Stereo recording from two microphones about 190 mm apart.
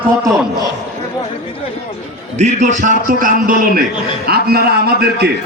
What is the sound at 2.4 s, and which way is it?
A man's voice, 40° right (ahead or behind).